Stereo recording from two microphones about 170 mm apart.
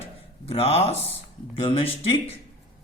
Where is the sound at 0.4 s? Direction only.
35° left (ahead or behind).